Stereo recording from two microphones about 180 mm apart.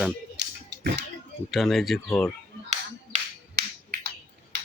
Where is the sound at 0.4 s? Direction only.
65° right (ahead or behind).